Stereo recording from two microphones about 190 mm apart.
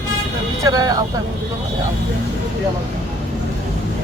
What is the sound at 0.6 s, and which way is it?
Speech, 20° right (ahead or behind).